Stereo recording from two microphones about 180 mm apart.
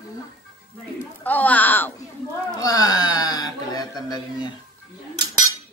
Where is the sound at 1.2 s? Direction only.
10° left (ahead or behind).